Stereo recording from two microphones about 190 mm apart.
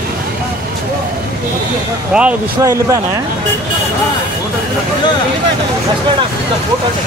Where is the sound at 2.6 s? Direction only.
15° right (ahead or behind).